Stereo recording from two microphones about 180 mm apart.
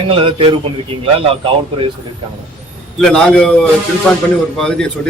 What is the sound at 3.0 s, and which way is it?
A man's voice, 5° left (ahead or behind).